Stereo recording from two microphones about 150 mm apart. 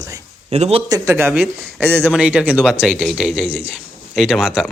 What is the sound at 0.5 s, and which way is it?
Speech, 45° right (ahead or behind).